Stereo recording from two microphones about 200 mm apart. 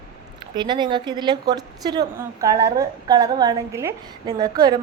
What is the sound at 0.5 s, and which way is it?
A woman's voice, 20° right (ahead or behind).